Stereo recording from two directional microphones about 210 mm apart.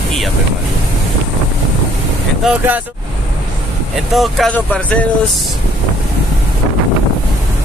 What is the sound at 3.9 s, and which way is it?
Speech, centre (ahead or behind).